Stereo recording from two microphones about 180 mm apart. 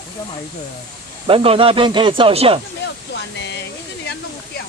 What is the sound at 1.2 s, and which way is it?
Speech, 30° right (ahead or behind).